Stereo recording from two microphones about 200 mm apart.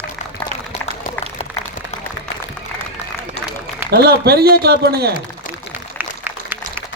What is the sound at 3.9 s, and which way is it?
Speech, 50° right (ahead or behind).